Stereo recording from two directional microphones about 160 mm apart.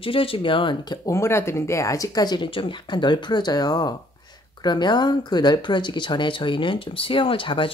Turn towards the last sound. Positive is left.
turn(degrees=30)  # may be behind; listen again after turning